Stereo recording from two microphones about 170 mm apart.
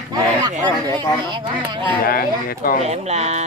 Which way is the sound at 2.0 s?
60° left (ahead or behind).